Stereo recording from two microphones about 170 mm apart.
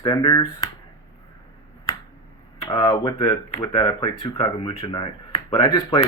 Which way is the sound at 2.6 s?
25° left (ahead or behind).